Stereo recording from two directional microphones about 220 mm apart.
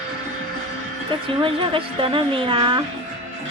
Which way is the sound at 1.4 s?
25° right (ahead or behind).